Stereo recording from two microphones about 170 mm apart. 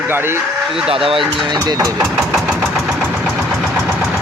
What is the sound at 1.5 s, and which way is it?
Speech, 20° right (ahead or behind).